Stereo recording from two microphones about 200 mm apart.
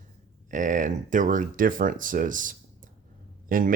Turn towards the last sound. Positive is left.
turn(degrees=-45)  # may be behind; listen again after turning